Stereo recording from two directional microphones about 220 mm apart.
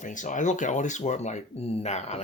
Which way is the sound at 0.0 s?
35° left (ahead or behind).